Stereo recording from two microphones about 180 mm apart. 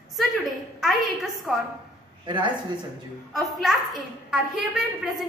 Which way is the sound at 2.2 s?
25° right (ahead or behind).